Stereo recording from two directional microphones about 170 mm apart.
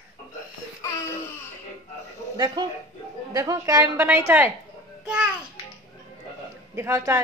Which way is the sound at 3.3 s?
20° right (ahead or behind).